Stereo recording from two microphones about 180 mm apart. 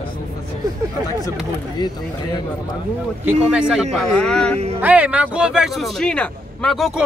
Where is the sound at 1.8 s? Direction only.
25° left (ahead or behind).